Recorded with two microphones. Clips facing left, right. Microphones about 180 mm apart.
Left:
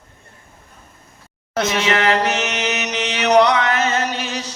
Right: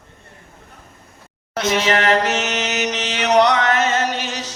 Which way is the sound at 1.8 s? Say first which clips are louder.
Right 1 dB; 40° right (ahead or behind).